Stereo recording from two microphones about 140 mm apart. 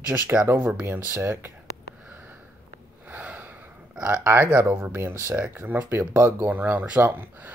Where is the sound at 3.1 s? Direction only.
10° right (ahead or behind).